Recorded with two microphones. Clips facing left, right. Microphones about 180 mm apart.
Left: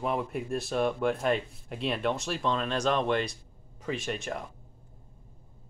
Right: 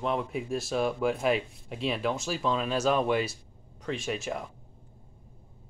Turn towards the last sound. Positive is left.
turn(degrees=0)  # may be behind; listen again after turning